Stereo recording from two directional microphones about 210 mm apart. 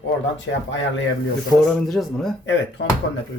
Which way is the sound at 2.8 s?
65° left (ahead or behind).